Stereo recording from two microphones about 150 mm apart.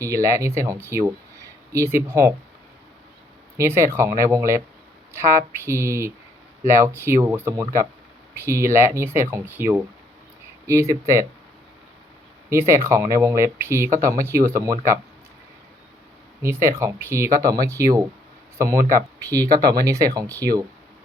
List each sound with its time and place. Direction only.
0.0 s speech: 20° right (ahead or behind)
3.6 s speech: 15° right (ahead or behind)
12.5 s speech: 20° right (ahead or behind)
16.4 s speech: 20° right (ahead or behind)